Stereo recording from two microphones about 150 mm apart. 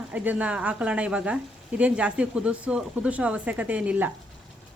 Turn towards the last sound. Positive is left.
turn(degrees=-10)  # may be behind; listen again after turning